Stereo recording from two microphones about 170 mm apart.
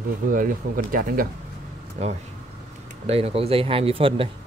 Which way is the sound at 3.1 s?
35° right (ahead or behind).